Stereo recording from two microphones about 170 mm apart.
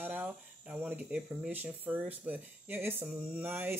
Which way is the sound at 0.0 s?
10° right (ahead or behind).